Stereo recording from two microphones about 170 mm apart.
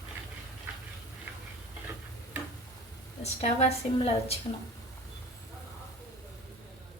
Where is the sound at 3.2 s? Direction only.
35° left (ahead or behind).